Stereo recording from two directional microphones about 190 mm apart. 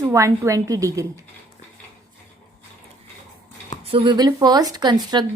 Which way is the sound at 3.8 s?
25° right (ahead or behind).